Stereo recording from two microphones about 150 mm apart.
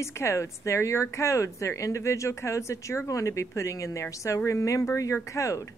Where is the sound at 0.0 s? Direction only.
20° left (ahead or behind).